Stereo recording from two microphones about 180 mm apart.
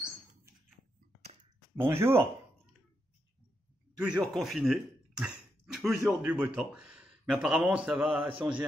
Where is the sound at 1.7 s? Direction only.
15° right (ahead or behind).